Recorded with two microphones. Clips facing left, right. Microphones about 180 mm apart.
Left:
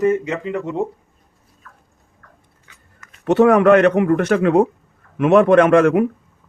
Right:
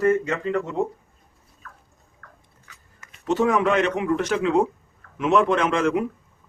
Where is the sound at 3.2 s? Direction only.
65° left (ahead or behind).